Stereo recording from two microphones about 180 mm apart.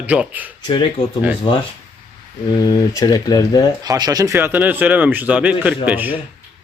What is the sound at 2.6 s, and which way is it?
Speech, 20° left (ahead or behind).